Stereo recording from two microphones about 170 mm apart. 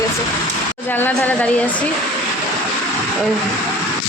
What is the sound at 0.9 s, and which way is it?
Speech, 10° left (ahead or behind).